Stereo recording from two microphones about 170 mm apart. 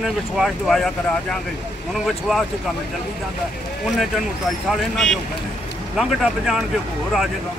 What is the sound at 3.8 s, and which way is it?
Speech, centre (ahead or behind).